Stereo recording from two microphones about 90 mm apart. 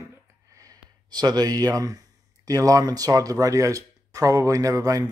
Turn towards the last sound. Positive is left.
turn(degrees=-40)  # may be behind; listen again after turning